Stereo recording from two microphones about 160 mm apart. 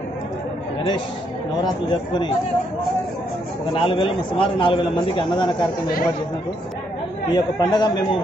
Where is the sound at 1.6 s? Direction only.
25° left (ahead or behind).